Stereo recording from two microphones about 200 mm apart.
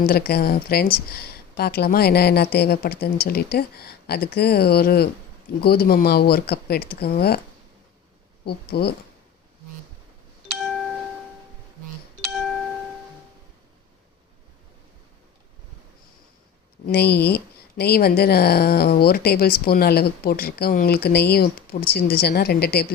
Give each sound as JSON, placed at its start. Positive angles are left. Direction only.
{"t": 0.0, "sound": "speech", "side_deg": 50}
{"t": 8.4, "sound": "speech", "side_deg": 55}
{"t": 10.5, "sound": "music", "side_deg": 0}
{"t": 12.2, "sound": "music", "side_deg": 0}
{"t": 16.8, "sound": "speech", "side_deg": 55}